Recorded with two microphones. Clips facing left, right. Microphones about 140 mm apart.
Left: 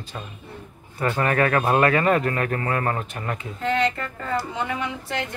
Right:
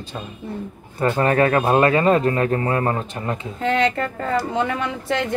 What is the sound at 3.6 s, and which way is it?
A woman's voice, 75° right (ahead or behind).